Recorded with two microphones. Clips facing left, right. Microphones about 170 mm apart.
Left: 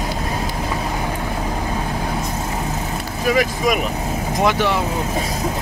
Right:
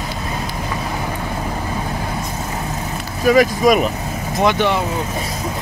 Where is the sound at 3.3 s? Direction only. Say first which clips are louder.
Right 7 dB; 40° right (ahead or behind).